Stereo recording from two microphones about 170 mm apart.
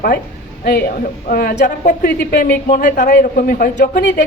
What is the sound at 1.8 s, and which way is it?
A man's voice, 55° left (ahead or behind).